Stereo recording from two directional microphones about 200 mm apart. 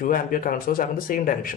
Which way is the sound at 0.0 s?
45° left (ahead or behind).